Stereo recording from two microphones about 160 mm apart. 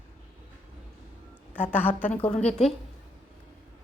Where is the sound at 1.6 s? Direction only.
10° left (ahead or behind).